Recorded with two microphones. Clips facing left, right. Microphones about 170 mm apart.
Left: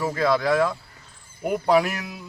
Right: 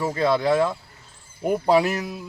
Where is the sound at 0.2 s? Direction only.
25° right (ahead or behind).